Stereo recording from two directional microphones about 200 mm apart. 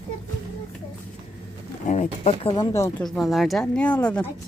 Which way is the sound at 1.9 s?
35° left (ahead or behind).